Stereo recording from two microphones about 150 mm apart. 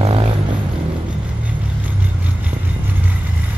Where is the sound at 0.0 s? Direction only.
35° right (ahead or behind).